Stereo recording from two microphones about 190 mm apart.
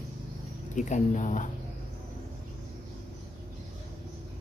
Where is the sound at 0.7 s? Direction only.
40° left (ahead or behind).